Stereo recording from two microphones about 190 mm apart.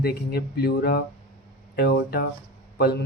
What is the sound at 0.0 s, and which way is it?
Speech, 55° left (ahead or behind).